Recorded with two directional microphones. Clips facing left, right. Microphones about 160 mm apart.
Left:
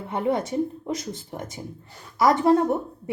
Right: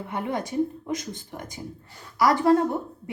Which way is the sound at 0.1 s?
25° left (ahead or behind).